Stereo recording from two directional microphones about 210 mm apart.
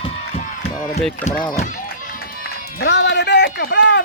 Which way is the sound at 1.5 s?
40° left (ahead or behind).